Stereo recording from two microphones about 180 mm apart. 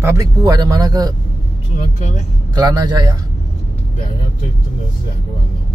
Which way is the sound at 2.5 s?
25° right (ahead or behind).